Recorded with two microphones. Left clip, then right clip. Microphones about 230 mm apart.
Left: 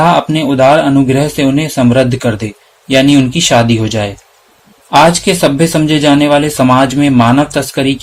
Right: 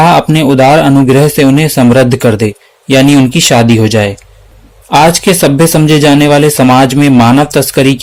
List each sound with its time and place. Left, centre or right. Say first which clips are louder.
0.0 s speech: right 3 dB; right